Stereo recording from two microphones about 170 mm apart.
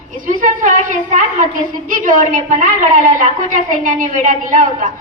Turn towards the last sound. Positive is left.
turn(degrees=-50)  # may be behind; listen again after turning